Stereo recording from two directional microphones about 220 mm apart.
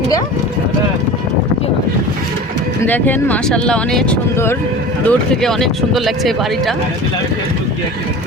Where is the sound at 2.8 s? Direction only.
10° left (ahead or behind).